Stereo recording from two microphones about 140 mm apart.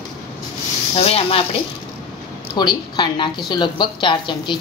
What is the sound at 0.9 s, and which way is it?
Speech, 45° left (ahead or behind).